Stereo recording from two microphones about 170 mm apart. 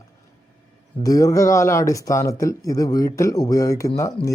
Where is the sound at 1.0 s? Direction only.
20° left (ahead or behind).